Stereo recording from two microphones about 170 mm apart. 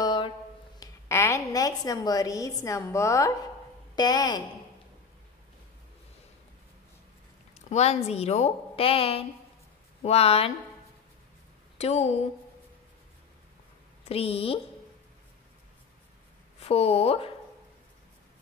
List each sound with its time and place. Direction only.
0.0 s a sound: 25° left (ahead or behind)
0.7 s a woman's voice: 15° left (ahead or behind)
7.7 s a woman's voice: 40° left (ahead or behind)
11.8 s a woman's voice: 40° left (ahead or behind)
14.0 s a woman's voice: 35° left (ahead or behind)
16.5 s speech: 35° left (ahead or behind)